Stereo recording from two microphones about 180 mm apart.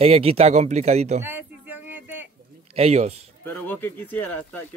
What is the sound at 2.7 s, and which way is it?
Speech, 35° right (ahead or behind).